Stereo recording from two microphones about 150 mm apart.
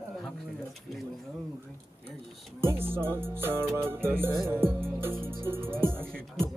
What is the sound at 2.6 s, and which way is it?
Music, 15° right (ahead or behind).